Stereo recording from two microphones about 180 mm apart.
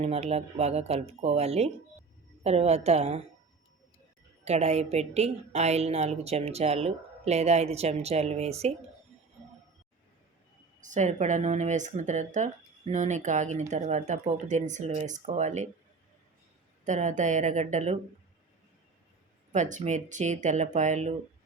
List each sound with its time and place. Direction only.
0.0 s a woman's voice: 35° right (ahead or behind)
4.4 s a woman's voice: 35° right (ahead or behind)
10.8 s a woman's voice: 45° right (ahead or behind)
16.8 s a woman's voice: 40° right (ahead or behind)
19.5 s a woman's voice: 45° right (ahead or behind)